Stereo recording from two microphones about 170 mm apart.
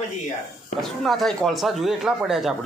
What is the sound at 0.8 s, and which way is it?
Speech, centre (ahead or behind).